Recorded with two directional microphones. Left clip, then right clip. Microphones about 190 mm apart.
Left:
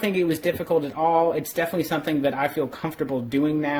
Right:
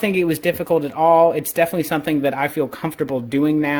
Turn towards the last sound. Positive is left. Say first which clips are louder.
# right 5 dB
turn(degrees=-35)  # may be behind; listen again after turning